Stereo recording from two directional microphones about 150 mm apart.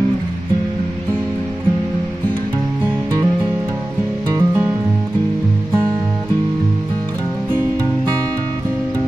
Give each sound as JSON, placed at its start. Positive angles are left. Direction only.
{"t": 4.3, "sound": "music", "side_deg": -20}